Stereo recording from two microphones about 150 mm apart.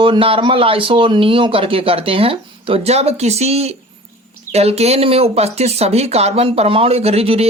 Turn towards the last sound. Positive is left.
turn(degrees=-45)  # may be behind; listen again after turning